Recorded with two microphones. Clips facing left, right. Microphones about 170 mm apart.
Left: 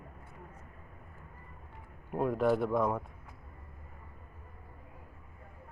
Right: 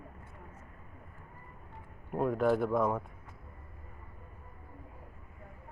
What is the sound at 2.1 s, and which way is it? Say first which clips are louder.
Speech: even; centre (ahead or behind).